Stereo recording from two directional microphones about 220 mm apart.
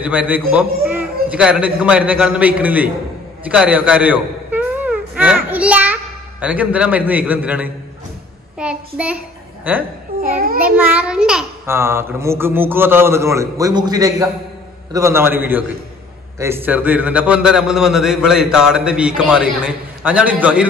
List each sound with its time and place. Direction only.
0.0 s a child's voice: 5° right (ahead or behind)
3.4 s a sound: 5° right (ahead or behind)
6.4 s a child's voice: 5° right (ahead or behind)
10.2 s a child's voice: 40° right (ahead or behind)
10.6 s a child's voice: 5° right (ahead or behind)